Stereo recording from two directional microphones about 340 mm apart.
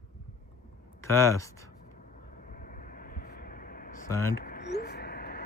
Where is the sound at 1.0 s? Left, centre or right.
Centre.